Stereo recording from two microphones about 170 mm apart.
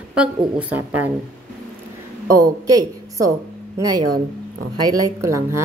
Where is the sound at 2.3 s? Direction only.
20° right (ahead or behind).